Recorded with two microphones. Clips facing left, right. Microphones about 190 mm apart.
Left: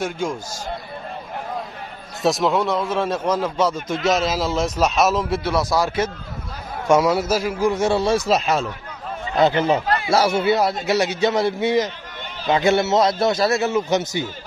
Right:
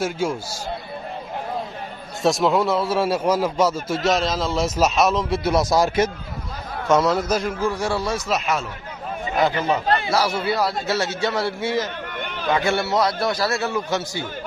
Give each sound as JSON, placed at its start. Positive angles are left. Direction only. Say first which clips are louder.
{"t": 0.0, "sound": "a man's voice", "louder": "right 1 dB", "side_deg": -5}
{"t": 2.2, "sound": "a man's voice", "louder": "even", "side_deg": 0}
{"t": 4.6, "sound": "a man's voice", "louder": "right 1 dB", "side_deg": -5}
{"t": 5.4, "sound": "speech", "louder": "right 2 dB", "side_deg": -20}
{"t": 6.9, "sound": "a man's voice", "louder": "left 2 dB", "side_deg": 10}
{"t": 7.7, "sound": "a man's voice", "louder": "left 5 dB", "side_deg": 20}
{"t": 12.1, "sound": "chatter", "louder": "right 4 dB", "side_deg": -60}
{"t": 12.4, "sound": "a man's voice", "louder": "left 4 dB", "side_deg": 20}